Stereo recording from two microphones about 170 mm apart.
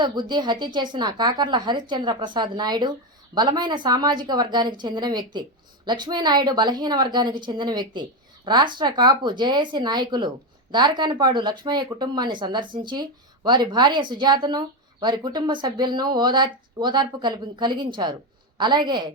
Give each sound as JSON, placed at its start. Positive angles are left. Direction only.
{"t": 0.0, "sound": "speech", "side_deg": -25}